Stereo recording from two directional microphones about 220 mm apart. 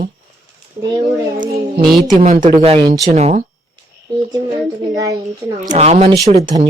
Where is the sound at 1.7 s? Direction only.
20° right (ahead or behind).